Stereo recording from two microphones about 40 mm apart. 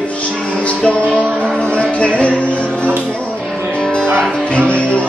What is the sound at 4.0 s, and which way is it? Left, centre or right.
Music, centre.